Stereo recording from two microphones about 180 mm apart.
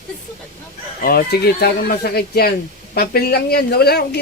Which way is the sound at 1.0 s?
60° left (ahead or behind).